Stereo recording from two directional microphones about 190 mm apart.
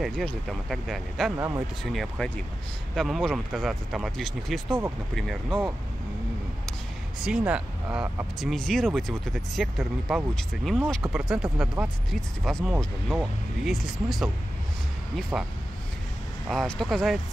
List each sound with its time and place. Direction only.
0.0 s speech: centre (ahead or behind)
1.3 s speech: 15° right (ahead or behind)
1.8 s speech: centre (ahead or behind)
4.6 s speech: 15° right (ahead or behind)
5.1 s speech: centre (ahead or behind)
7.2 s speech: 5° right (ahead or behind)
15.3 s speech: 10° right (ahead or behind)
16.4 s speech: centre (ahead or behind)